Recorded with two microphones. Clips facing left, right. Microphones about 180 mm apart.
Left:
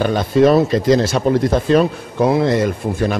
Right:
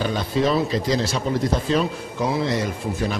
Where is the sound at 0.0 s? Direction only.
55° left (ahead or behind).